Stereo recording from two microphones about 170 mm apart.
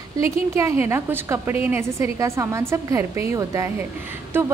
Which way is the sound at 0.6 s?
15° right (ahead or behind).